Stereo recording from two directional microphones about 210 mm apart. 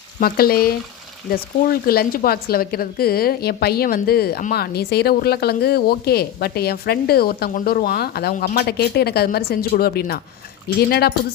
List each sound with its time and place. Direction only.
0.2 s speech: 45° left (ahead or behind)